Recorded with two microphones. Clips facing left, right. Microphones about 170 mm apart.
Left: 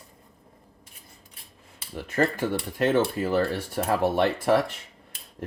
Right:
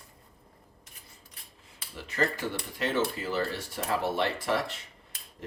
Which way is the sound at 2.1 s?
50° left (ahead or behind).